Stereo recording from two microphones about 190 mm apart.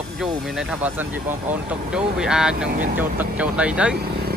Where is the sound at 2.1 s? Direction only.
5° right (ahead or behind).